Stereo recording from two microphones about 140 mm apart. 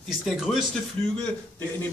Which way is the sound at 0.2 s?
Centre (ahead or behind).